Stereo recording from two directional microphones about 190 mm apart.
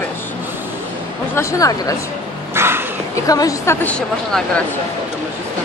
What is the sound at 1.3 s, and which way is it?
Speech, 15° left (ahead or behind).